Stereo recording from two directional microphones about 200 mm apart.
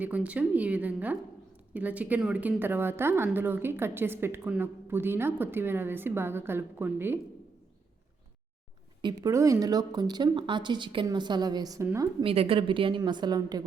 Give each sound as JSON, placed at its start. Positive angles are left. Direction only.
{"t": 0.0, "sound": "a woman's voice", "side_deg": -5}
{"t": 9.0, "sound": "speech", "side_deg": -20}
{"t": 12.2, "sound": "speech", "side_deg": -30}